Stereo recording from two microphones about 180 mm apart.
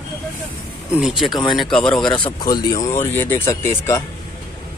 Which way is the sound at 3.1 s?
10° left (ahead or behind).